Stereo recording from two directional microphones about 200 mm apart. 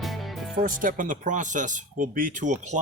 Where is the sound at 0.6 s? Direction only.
40° right (ahead or behind).